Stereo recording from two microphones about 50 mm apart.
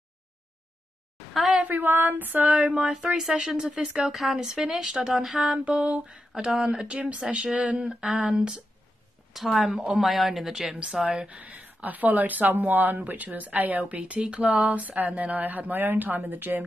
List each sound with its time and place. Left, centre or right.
1.7 s speech: right
2.4 s speech: centre
5.7 s speech: right
9.3 s speech: centre; by 16.6 s right